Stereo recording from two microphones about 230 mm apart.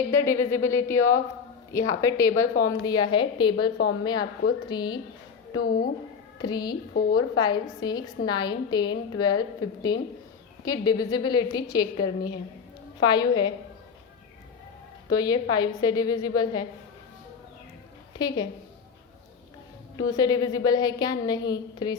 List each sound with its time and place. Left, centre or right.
0.1 s a woman's voice: centre
5.6 s a woman's voice: left
6.4 s a woman's voice: centre
15.1 s a woman's voice: centre
18.2 s a woman's voice: centre
20.0 s a woman's voice: centre